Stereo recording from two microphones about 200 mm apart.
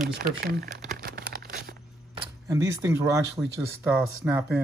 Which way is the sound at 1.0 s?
50° right (ahead or behind).